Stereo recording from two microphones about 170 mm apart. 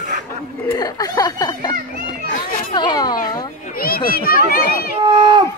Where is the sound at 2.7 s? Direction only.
25° left (ahead or behind).